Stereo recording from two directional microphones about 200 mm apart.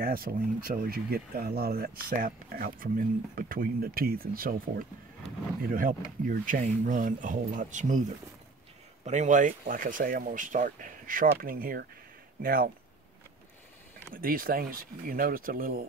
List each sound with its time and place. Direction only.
0.0 s speech: 45° right (ahead or behind)
9.0 s speech: 35° right (ahead or behind)
14.1 s speech: 45° right (ahead or behind)